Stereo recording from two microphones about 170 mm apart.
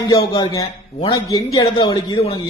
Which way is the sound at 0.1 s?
20° left (ahead or behind).